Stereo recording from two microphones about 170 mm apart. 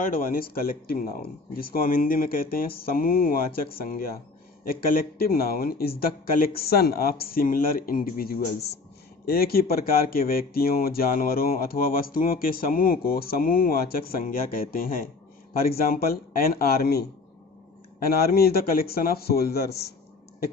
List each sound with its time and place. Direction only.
0.0 s speech: 55° left (ahead or behind)